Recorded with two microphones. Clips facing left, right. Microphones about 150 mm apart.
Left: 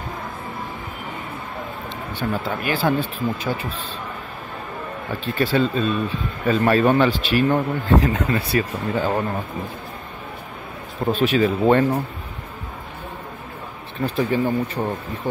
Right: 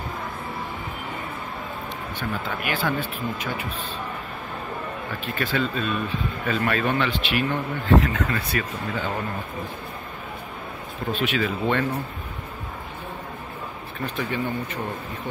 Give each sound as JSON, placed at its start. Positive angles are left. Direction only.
{"t": 2.1, "sound": "speech", "side_deg": 30}
{"t": 5.2, "sound": "speech", "side_deg": 30}
{"t": 11.1, "sound": "speech", "side_deg": 35}
{"t": 14.0, "sound": "speech", "side_deg": 35}